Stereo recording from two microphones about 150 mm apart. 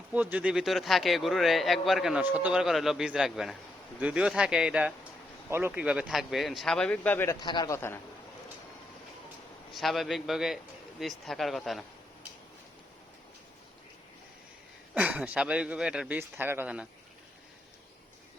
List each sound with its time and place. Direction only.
0.1 s speech: 10° right (ahead or behind); by 7.3 s 15° left (ahead or behind)
7.3 s a man's voice: 30° left (ahead or behind)
9.7 s speech: centre (ahead or behind)
14.9 s speech: 10° right (ahead or behind)